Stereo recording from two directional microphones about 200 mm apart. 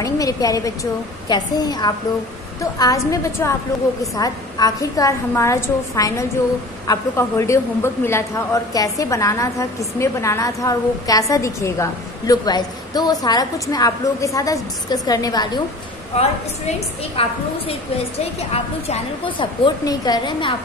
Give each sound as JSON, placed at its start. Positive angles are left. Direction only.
{"t": 0.0, "sound": "a woman's voice", "side_deg": 15}
{"t": 16.2, "sound": "a woman's voice", "side_deg": 30}